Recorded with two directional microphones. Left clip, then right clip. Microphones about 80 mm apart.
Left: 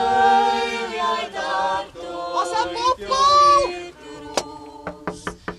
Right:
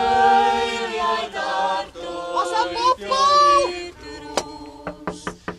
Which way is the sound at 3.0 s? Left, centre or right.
Centre.